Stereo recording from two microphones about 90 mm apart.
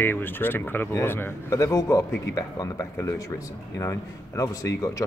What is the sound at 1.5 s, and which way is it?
Speech, 35° left (ahead or behind).